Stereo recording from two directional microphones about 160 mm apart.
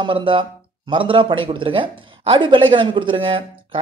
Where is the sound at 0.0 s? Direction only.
30° right (ahead or behind).